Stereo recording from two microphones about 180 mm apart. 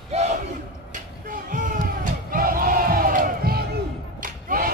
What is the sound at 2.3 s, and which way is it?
Crowd, 55° right (ahead or behind).